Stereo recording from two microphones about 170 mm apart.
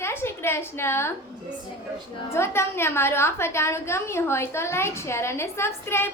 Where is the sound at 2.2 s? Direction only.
15° left (ahead or behind).